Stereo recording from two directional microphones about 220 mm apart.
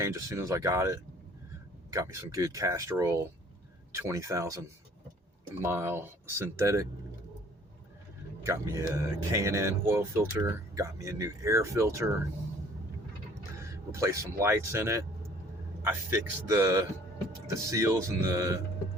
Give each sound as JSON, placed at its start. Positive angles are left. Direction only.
{"t": 0.0, "sound": "speech", "side_deg": -10}
{"t": 5.6, "sound": "speech", "side_deg": -10}
{"t": 8.9, "sound": "speech", "side_deg": -15}
{"t": 13.9, "sound": "speech", "side_deg": -15}